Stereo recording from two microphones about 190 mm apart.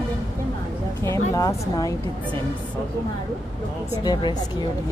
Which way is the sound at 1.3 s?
15° left (ahead or behind).